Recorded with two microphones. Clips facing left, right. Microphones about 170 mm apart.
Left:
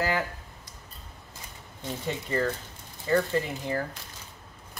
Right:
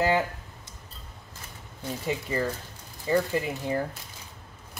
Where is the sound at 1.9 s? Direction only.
10° right (ahead or behind).